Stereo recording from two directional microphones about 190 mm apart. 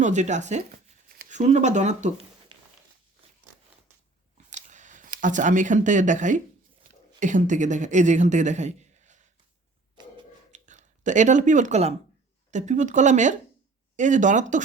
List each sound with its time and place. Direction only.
0.0 s speech: 40° right (ahead or behind)
4.4 s a sound: 40° right (ahead or behind)
7.2 s a woman's voice: 40° right (ahead or behind)
10.5 s speech: 40° right (ahead or behind)